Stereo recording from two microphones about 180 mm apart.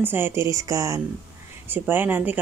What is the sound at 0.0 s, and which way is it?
Speech, 15° right (ahead or behind).